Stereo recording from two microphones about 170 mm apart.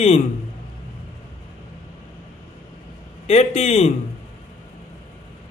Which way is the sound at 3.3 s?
40° left (ahead or behind).